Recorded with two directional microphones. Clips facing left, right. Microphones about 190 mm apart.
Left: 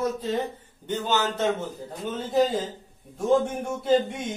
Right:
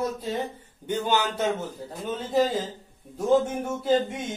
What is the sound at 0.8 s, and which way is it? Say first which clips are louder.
Speech: right 1 dB; 10° right (ahead or behind).